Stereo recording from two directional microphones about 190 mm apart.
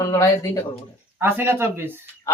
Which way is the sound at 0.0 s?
15° left (ahead or behind).